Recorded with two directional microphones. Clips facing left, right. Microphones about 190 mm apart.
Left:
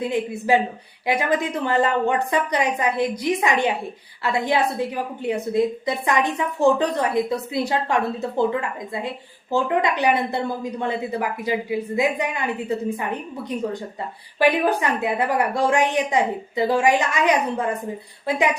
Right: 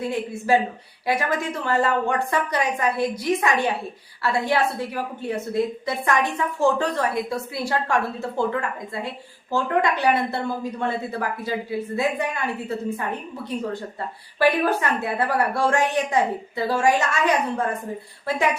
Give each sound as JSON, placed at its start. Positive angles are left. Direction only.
{"t": 0.0, "sound": "a woman's voice", "side_deg": 20}